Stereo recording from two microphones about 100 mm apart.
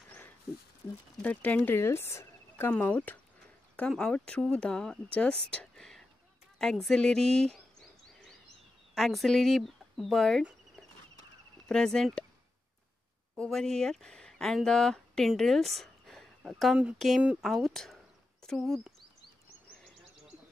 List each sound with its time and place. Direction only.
1.2 s speech: 15° left (ahead or behind)
1.8 s speech: 25° left (ahead or behind)
2.7 s speech: 15° left (ahead or behind)
8.9 s speech: centre (ahead or behind)
11.7 s speech: 5° left (ahead or behind)
13.4 s speech: 5° left (ahead or behind)
17.2 s speech: 10° right (ahead or behind)
17.5 s a sound: centre (ahead or behind)